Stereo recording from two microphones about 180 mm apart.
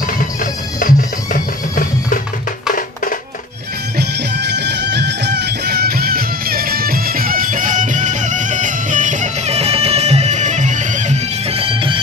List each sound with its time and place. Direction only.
0.7 s music: 50° left (ahead or behind)
4.5 s music: 70° right (ahead or behind); by 12.0 s 30° right (ahead or behind)